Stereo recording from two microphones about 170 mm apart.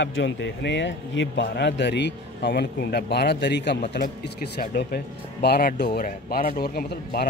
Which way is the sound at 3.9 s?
70° left (ahead or behind).